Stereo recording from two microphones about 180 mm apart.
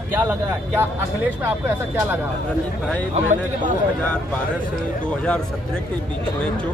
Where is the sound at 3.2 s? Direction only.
45° right (ahead or behind).